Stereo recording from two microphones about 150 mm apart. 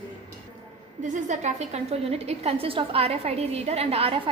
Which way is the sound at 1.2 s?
50° right (ahead or behind).